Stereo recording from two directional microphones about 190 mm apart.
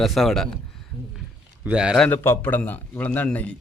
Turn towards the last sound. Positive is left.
turn(degrees=5)  # may be behind; listen again after turning